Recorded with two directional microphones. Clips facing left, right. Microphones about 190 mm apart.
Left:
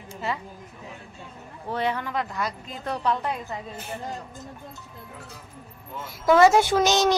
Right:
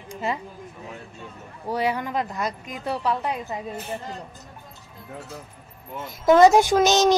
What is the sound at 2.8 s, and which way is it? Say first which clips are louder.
Speech: right 1 dB; 5° right (ahead or behind).